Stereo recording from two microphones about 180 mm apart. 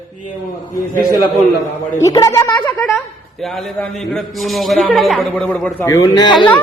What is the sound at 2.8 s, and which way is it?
A man's voice, centre (ahead or behind).